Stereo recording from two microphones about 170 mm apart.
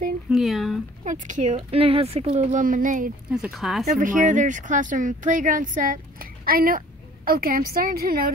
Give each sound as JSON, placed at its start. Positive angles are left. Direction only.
{"t": 0.3, "sound": "speech", "side_deg": 0}
{"t": 1.0, "sound": "speech", "side_deg": -45}
{"t": 3.3, "sound": "speech", "side_deg": -5}
{"t": 3.8, "sound": "a woman's voice", "side_deg": -50}